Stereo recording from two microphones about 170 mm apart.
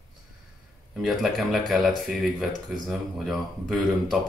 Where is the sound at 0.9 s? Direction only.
Centre (ahead or behind).